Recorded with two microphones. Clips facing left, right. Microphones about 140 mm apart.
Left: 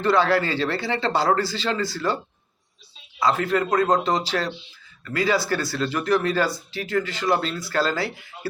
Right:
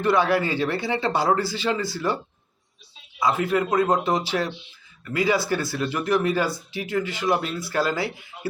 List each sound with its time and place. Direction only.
0.0 s speech: 15° right (ahead or behind)
3.2 s speech: 15° right (ahead or behind)
3.7 s a man's voice: 5° right (ahead or behind)
4.3 s speech: 15° right (ahead or behind)